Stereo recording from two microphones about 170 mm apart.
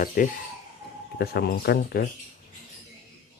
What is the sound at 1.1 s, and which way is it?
Speech, 70° left (ahead or behind).